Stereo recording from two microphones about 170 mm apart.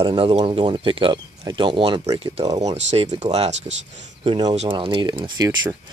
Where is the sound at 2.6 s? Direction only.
40° right (ahead or behind).